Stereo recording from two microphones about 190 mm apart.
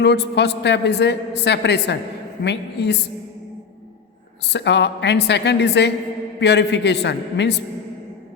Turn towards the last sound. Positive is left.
turn(degrees=65)  # may be behind; listen again after turning